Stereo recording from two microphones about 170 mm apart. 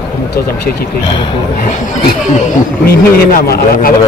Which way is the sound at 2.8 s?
60° left (ahead or behind).